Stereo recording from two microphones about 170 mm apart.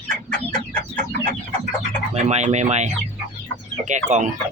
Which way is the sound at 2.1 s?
40° right (ahead or behind).